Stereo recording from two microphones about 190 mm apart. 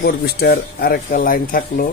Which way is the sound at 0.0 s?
55° left (ahead or behind).